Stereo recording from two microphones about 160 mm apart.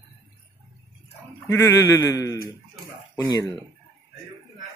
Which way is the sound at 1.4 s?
15° left (ahead or behind).